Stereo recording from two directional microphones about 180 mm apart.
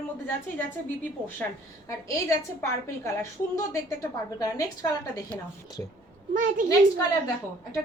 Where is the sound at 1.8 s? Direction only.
15° left (ahead or behind).